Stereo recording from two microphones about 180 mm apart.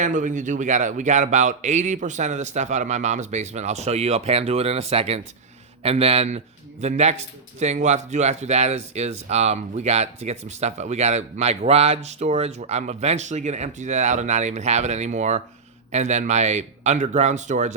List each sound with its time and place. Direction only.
0.0 s a man's voice: 45° right (ahead or behind)